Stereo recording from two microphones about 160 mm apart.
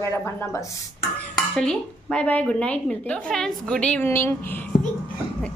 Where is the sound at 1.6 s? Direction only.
5° left (ahead or behind).